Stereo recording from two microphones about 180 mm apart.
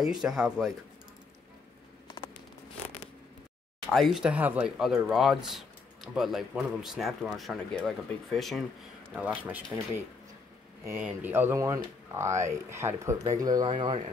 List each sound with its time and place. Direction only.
0.0 s speech: centre (ahead or behind)
3.9 s speech: centre (ahead or behind); by 14.0 s 30° right (ahead or behind)